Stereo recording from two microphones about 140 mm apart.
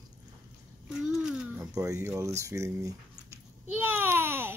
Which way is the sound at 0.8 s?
5° right (ahead or behind).